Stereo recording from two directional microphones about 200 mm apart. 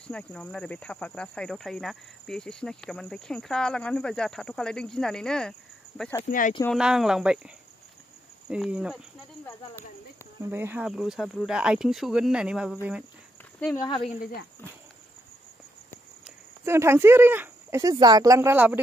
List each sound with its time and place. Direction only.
0.1 s speech: 5° left (ahead or behind)
6.7 s speech: centre (ahead or behind)
10.5 s speech: 10° right (ahead or behind)
13.7 s speech: 25° left (ahead or behind)
16.3 s speech: 15° right (ahead or behind)